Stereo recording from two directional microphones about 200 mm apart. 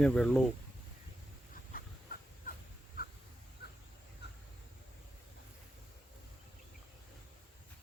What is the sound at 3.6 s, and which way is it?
Bird, 55° left (ahead or behind).